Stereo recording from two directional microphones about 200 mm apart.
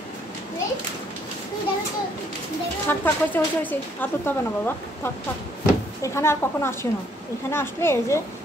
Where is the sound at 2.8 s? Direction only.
10° left (ahead or behind).